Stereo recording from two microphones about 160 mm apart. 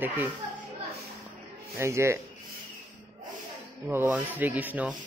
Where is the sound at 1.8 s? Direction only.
15° right (ahead or behind).